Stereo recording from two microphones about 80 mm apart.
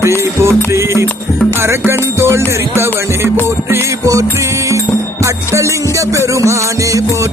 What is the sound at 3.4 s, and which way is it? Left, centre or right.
Music, right.